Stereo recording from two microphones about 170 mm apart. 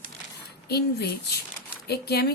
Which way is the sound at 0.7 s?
75° left (ahead or behind).